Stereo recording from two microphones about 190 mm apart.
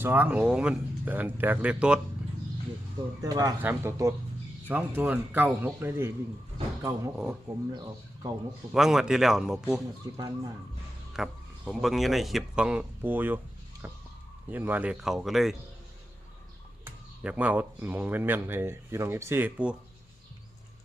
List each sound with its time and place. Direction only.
0.0 s speech: 10° right (ahead or behind)
3.2 s speech: 20° right (ahead or behind)
7.4 s speech: 20° right (ahead or behind)
8.7 s speech: 5° right (ahead or behind)
10.2 s speech: 20° right (ahead or behind)
11.1 s speech: centre (ahead or behind)
13.8 s a sound: 10° right (ahead or behind)
14.5 s speech: 10° right (ahead or behind)
16.8 s speech: 5° right (ahead or behind)